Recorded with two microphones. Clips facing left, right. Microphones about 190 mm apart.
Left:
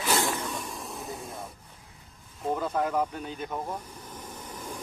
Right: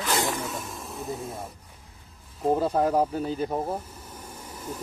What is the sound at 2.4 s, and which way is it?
Speech, 35° right (ahead or behind).